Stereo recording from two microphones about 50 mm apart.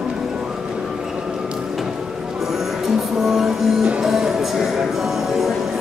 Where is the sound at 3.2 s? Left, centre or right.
Centre.